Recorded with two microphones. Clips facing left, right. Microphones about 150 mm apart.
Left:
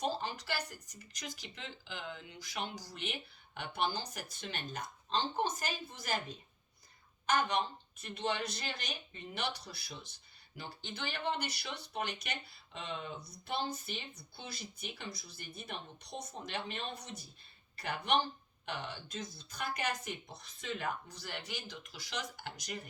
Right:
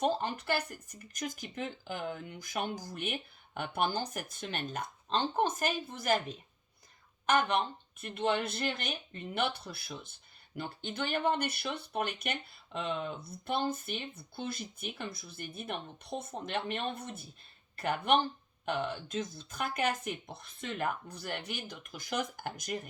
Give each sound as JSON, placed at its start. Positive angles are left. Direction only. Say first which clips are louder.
{"t": 0.0, "sound": "speech", "louder": "right 5 dB", "side_deg": -55}
{"t": 7.3, "sound": "speech", "louder": "right 3 dB", "side_deg": -55}